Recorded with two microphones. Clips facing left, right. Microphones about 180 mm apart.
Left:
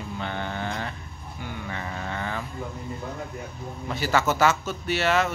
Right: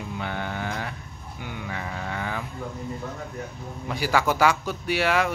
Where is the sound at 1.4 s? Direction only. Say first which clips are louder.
Even; 15° right (ahead or behind).